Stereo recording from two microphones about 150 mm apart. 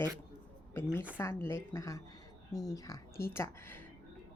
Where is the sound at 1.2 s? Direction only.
20° left (ahead or behind).